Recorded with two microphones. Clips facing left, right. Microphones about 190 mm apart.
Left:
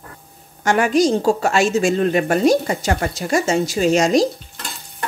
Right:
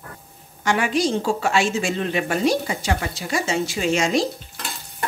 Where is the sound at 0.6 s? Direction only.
45° left (ahead or behind).